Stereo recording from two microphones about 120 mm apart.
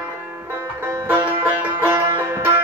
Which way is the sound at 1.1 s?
15° right (ahead or behind).